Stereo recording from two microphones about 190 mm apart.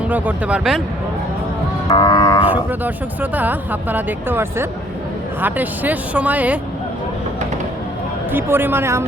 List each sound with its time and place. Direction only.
0.1 s speech: 5° right (ahead or behind)
1.9 s cattle: 20° left (ahead or behind)
2.4 s speech: 10° right (ahead or behind)
8.3 s speech: 10° right (ahead or behind)